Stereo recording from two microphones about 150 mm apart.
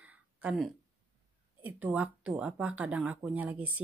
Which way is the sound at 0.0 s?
10° right (ahead or behind).